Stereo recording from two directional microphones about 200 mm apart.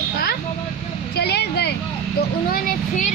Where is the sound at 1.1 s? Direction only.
55° left (ahead or behind).